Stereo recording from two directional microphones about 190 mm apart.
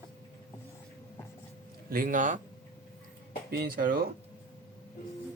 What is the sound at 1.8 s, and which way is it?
Speech, 50° right (ahead or behind).